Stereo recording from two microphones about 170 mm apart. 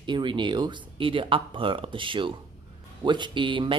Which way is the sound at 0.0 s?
30° right (ahead or behind).